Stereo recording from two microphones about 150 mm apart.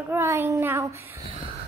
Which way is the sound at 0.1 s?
15° right (ahead or behind).